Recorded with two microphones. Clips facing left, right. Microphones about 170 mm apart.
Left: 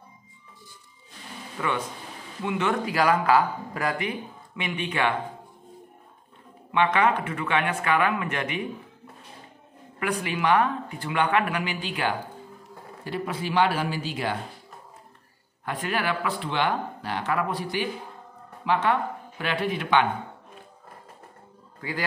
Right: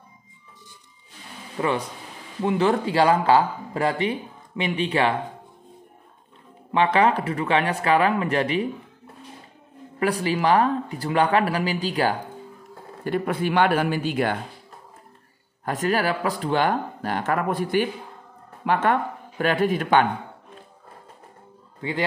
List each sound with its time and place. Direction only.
1.6 s speech: 35° right (ahead or behind)
6.7 s speech: 35° right (ahead or behind)
9.9 s speech: 35° right (ahead or behind)
13.0 s speech: 55° right (ahead or behind)
15.6 s speech: 40° right (ahead or behind)
21.8 s a man's voice: 25° right (ahead or behind)